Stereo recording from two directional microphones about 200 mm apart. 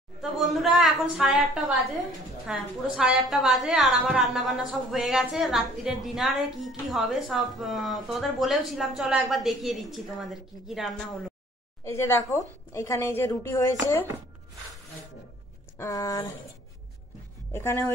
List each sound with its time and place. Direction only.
0.2 s a woman's voice: centre (ahead or behind)
11.8 s speech: 15° left (ahead or behind)
15.8 s speech: 15° left (ahead or behind)
17.5 s speech: 10° left (ahead or behind)